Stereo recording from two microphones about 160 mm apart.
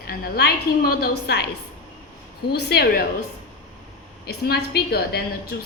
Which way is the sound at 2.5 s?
85° left.